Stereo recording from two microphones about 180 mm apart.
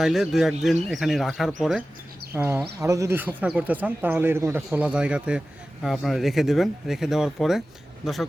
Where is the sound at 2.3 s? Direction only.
10° right (ahead or behind).